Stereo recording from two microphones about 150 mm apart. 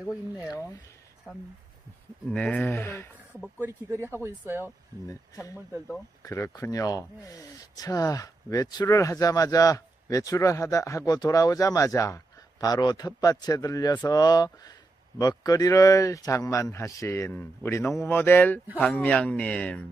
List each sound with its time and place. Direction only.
2.2 s speech: 5° left (ahead or behind)
3.6 s speech: 15° right (ahead or behind)
5.0 s speech: 20° left (ahead or behind)